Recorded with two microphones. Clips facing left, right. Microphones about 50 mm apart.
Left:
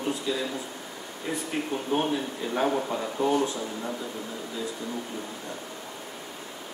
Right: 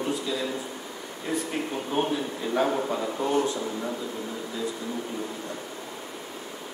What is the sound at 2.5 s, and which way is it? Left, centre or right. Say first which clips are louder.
Speech: right 1 dB; centre.